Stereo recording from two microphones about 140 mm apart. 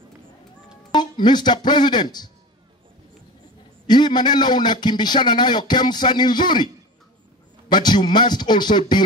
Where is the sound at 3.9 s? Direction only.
30° left (ahead or behind).